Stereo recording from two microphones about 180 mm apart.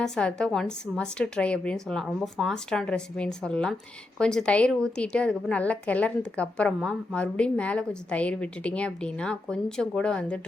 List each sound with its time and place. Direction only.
0.0 s a woman's voice: 5° left (ahead or behind)